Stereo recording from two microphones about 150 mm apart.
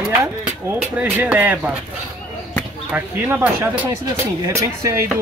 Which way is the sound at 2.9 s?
10° right (ahead or behind).